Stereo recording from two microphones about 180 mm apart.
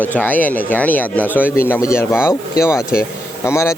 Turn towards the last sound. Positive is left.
turn(degrees=15)  # may be behind; listen again after turning